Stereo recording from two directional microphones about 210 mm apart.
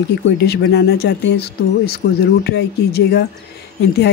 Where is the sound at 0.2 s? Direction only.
55° left (ahead or behind).